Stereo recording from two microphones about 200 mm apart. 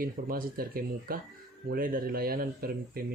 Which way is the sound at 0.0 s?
45° right (ahead or behind).